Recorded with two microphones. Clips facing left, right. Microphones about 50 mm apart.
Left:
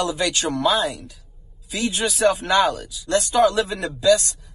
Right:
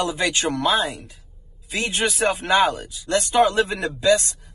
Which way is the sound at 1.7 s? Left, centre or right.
Right.